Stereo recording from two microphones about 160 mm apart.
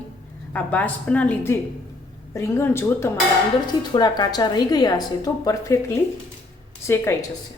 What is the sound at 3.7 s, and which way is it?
A woman's voice, 25° left (ahead or behind).